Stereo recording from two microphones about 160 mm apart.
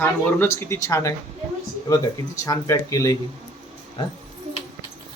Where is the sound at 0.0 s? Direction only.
15° left (ahead or behind).